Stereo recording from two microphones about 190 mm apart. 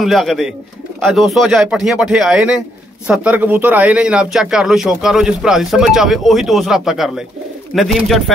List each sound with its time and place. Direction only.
0.0 s speech: centre (ahead or behind)